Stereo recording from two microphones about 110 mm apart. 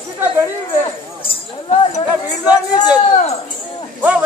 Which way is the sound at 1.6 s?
60° left (ahead or behind).